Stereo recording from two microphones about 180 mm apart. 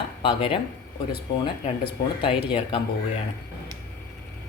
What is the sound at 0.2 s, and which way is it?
Speech, 30° left (ahead or behind).